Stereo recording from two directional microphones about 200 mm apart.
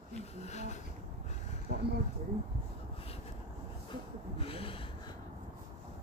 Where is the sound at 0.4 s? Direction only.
35° left (ahead or behind).